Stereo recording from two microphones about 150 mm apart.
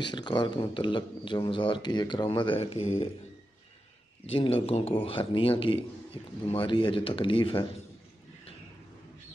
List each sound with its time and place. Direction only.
0.1 s speech: 30° left (ahead or behind)
4.3 s speech: 35° left (ahead or behind)